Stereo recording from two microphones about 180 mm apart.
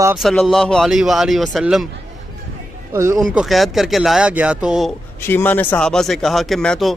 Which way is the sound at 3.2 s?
Centre (ahead or behind).